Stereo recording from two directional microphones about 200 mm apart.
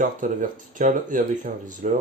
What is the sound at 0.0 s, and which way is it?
Speech, 40° right (ahead or behind).